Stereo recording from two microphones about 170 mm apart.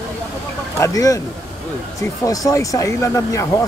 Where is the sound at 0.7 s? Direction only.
20° left (ahead or behind).